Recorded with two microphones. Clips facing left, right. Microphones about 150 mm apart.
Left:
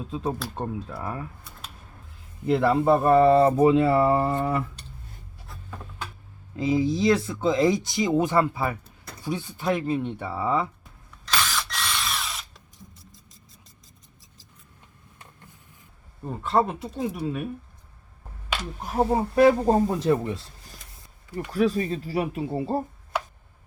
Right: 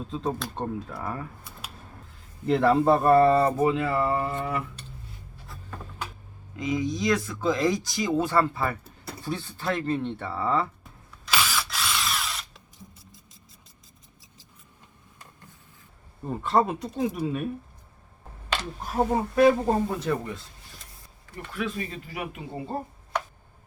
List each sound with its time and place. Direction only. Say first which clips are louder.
0.1 s speech: left 1 dB; 5° left (ahead or behind)
2.5 s speech: even; 5° left (ahead or behind)
3.2 s speech: left 3 dB; 20° left (ahead or behind)
6.6 s speech: left 5 dB; 30° left (ahead or behind); by 10.7 s 10° left (ahead or behind)
11.3 s drill: even; 5° right (ahead or behind)
16.2 s speech: even; centre (ahead or behind)
19.1 s speech: left 2 dB; 30° left (ahead or behind)
21.5 s speech: left 8 dB; 35° left (ahead or behind)